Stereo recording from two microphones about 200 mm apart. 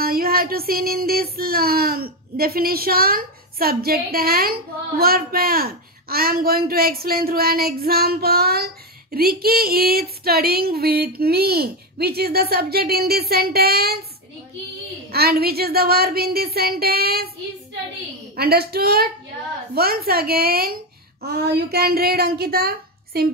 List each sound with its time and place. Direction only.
0.0 s child singing: 50° right (ahead or behind)
15.0 s child singing: 50° right (ahead or behind)
18.3 s child singing: 50° right (ahead or behind)